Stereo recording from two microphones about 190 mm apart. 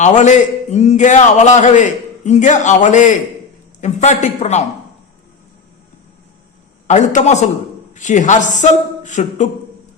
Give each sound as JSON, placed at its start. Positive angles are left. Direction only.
{"t": 0.0, "sound": "a man's voice", "side_deg": 40}
{"t": 6.8, "sound": "a man's voice", "side_deg": 40}